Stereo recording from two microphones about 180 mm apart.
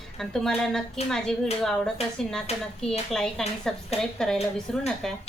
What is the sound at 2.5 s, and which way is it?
Speech, 35° left (ahead or behind).